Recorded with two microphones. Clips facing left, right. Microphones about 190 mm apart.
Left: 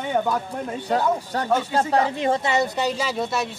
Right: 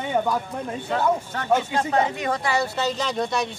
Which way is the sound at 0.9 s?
35° left (ahead or behind).